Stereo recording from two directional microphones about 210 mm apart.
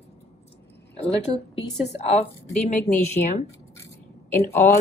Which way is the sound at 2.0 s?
30° left (ahead or behind).